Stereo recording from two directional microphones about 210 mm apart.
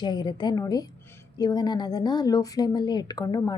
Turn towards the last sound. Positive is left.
turn(degrees=15)  # may be behind; listen again after turning